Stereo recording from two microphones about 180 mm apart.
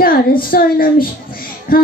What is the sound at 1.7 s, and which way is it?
Music, 55° left (ahead or behind).